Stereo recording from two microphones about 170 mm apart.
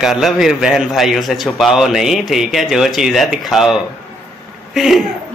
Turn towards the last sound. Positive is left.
turn(degrees=0)  # may be behind; listen again after turning